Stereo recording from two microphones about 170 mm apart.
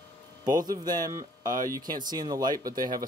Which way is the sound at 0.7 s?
20° right (ahead or behind).